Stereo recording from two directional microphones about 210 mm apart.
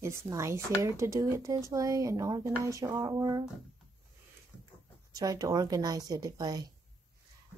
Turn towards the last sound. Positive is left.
turn(degrees=-20)  # may be behind; listen again after turning